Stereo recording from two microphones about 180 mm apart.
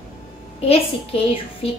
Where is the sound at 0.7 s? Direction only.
30° left (ahead or behind).